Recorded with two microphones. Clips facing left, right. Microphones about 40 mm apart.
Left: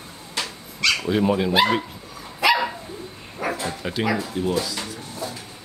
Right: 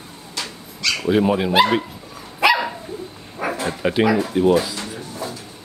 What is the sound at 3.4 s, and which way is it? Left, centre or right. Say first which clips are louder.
Bow-wow: right 5 dB; right.